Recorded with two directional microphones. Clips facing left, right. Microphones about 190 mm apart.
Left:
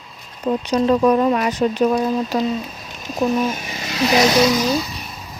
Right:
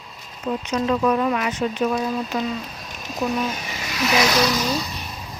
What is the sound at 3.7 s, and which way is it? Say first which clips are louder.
Vehicle: left 4 dB; 30° left (ahead or behind).